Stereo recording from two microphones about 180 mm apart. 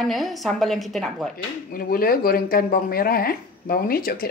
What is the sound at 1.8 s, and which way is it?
Speech, 55° left (ahead or behind).